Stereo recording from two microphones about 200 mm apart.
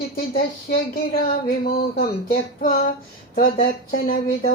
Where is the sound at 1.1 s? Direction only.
50° left (ahead or behind).